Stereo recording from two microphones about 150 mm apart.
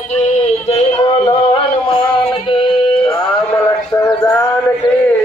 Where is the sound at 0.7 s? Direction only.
40° left (ahead or behind).